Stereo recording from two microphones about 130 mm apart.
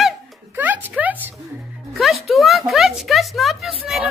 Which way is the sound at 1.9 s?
Centre (ahead or behind).